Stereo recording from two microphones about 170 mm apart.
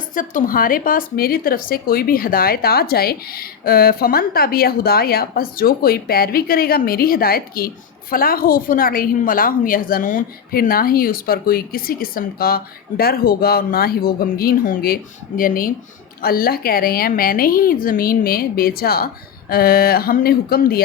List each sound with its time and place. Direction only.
0.1 s speech: 50° left (ahead or behind)